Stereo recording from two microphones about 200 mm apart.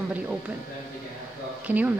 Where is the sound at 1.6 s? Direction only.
10° right (ahead or behind).